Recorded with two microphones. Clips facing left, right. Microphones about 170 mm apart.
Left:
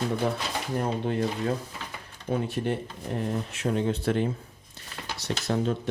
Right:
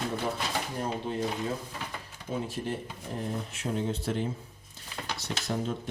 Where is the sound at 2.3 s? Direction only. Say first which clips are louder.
Left 5 dB; 65° left (ahead or behind).